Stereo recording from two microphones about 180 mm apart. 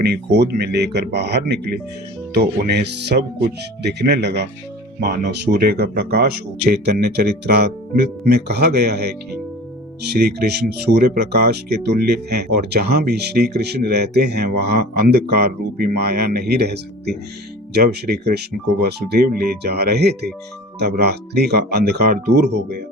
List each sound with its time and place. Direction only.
0.0 s speech: 65° right (ahead or behind)